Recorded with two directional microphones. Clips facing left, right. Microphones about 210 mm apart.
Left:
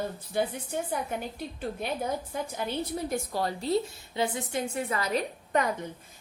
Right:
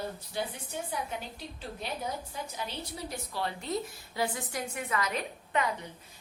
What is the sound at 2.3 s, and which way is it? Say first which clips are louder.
A woman's voice: left 6 dB; 55° left (ahead or behind).